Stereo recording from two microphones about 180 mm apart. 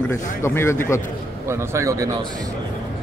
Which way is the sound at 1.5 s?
15° right (ahead or behind).